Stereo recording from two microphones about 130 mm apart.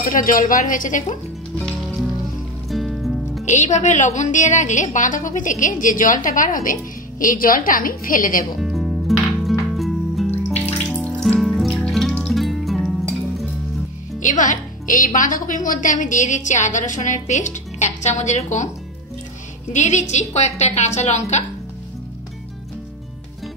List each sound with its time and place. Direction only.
0.0 s a woman's voice: 90° left
1.6 s music: 5° left (ahead or behind)
3.4 s a woman's voice: 65° left (ahead or behind); by 8.4 s 90° left
8.5 s music: centre (ahead or behind)
10.5 s music: 10° left (ahead or behind)
14.2 s a woman's voice: 75° left (ahead or behind)
19.7 s a woman's voice: 65° left (ahead or behind)